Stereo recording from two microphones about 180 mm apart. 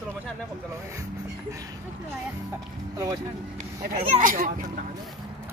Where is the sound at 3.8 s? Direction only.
50° right (ahead or behind).